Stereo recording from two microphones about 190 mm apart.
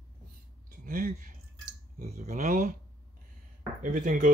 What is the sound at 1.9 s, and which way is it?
Speech, 40° right (ahead or behind).